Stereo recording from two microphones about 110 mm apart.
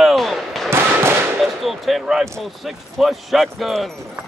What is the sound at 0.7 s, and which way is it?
Fireworks, 20° right (ahead or behind).